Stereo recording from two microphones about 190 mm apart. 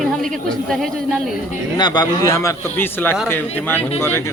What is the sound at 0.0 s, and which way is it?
Speech, centre (ahead or behind).